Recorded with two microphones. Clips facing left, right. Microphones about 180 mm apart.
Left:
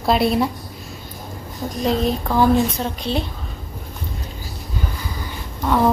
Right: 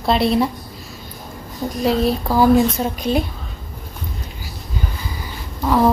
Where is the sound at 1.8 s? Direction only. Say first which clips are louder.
Right 2 dB; 5° right (ahead or behind).